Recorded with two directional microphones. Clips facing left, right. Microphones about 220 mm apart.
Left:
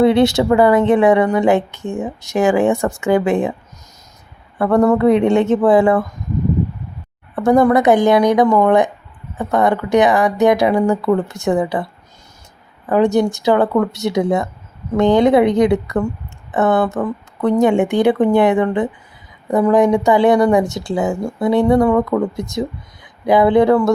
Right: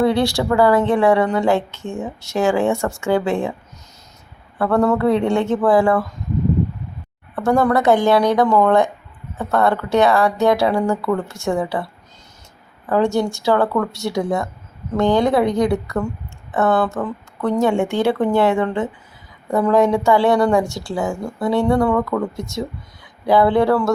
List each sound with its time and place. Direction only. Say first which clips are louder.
0.0 s speech: left 5 dB; 20° left (ahead or behind)
4.5 s speech: left 3 dB; 20° left (ahead or behind)
7.3 s speech: left 4 dB; 20° left (ahead or behind)
12.9 s speech: left 4 dB; 20° left (ahead or behind)